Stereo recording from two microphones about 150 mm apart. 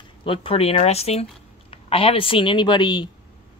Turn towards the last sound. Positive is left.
turn(degrees=30)  # may be behind; listen again after turning